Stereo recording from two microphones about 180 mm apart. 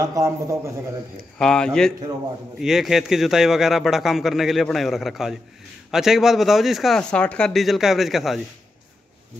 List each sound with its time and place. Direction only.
0.0 s a man's voice: 20° right (ahead or behind)
1.4 s a man's voice: 5° left (ahead or behind)